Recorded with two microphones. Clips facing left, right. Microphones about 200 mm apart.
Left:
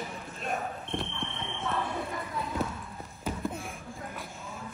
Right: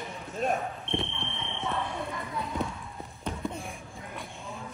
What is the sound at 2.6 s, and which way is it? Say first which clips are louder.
Clip-clop: even; centre (ahead or behind).